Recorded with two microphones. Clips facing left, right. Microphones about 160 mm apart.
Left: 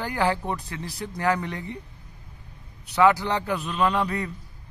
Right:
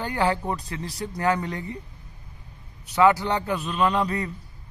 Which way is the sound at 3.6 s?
10° right (ahead or behind).